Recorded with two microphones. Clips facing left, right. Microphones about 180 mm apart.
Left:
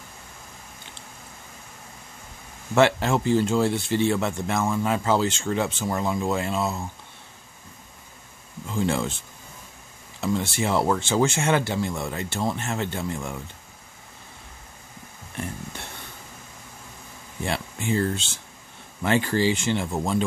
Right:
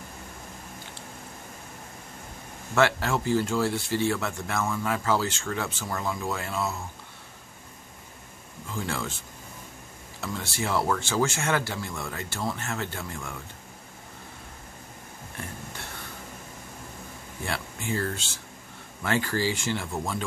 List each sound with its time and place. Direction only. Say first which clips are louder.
2.7 s speech: left 4 dB; 20° left (ahead or behind)
8.7 s speech: left 7 dB; 20° left (ahead or behind)
10.2 s speech: left 7 dB; 25° left (ahead or behind)
17.5 s speech: left 5 dB; 20° left (ahead or behind)